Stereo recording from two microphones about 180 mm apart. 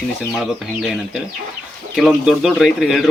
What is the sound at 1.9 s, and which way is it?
Speech, centre (ahead or behind).